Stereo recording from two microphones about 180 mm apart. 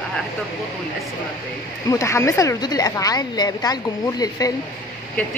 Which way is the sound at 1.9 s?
15° left (ahead or behind).